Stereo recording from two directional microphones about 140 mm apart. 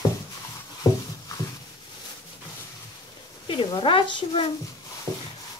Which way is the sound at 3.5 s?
35° left (ahead or behind).